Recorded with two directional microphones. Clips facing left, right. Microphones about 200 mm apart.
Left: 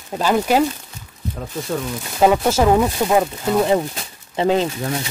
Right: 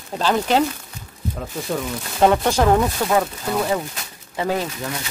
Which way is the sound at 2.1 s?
5° left (ahead or behind).